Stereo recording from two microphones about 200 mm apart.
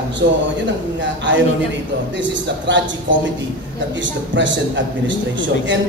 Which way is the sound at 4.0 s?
65° right (ahead or behind).